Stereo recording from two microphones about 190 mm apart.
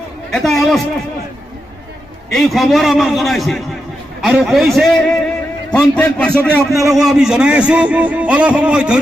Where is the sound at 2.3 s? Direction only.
Centre (ahead or behind).